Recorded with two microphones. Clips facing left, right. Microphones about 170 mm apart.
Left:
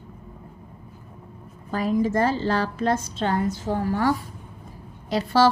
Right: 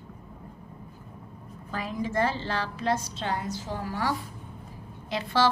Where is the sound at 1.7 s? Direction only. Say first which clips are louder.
Left 7 dB; 40° left (ahead or behind).